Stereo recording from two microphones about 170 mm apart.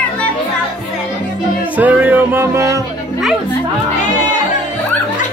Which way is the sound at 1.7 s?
10° right (ahead or behind).